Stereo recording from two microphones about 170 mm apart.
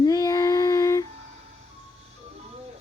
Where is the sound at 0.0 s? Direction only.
20° left (ahead or behind).